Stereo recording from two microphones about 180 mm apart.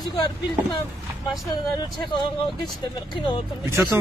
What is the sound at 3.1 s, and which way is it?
Speech, 25° left (ahead or behind).